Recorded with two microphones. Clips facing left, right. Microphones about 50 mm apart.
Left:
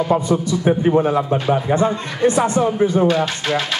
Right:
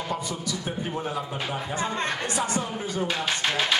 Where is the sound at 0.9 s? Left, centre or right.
Left.